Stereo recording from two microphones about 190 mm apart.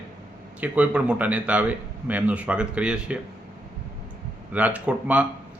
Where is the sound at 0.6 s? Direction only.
5° right (ahead or behind).